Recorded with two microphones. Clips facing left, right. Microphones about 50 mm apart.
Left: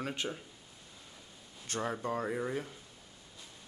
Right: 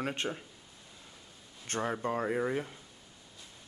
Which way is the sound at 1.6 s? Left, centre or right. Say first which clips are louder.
Right 2 dB; right.